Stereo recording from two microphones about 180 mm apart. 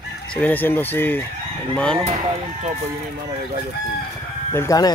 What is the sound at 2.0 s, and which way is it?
Speech, 35° right (ahead or behind).